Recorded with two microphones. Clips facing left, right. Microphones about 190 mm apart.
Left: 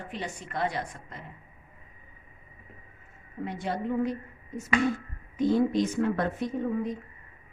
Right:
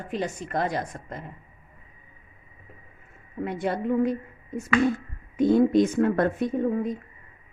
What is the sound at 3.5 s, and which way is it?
Speech, 60° right (ahead or behind).